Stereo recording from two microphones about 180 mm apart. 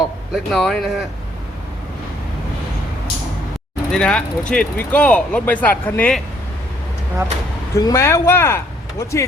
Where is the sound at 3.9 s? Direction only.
5° left (ahead or behind).